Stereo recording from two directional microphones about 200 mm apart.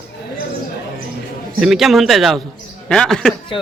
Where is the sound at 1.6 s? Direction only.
Centre (ahead or behind).